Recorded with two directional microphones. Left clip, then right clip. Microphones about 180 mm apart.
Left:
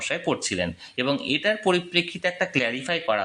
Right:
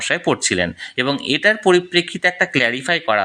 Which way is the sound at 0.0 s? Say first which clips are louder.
Right 8 dB; 30° right (ahead or behind).